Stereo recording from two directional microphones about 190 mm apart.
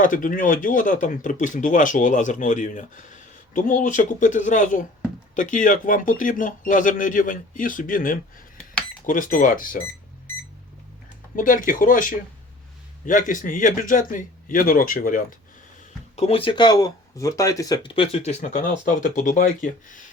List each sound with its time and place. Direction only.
0.0 s speech: 45° left (ahead or behind)
11.3 s speech: 45° left (ahead or behind)
16.1 s speech: 35° left (ahead or behind)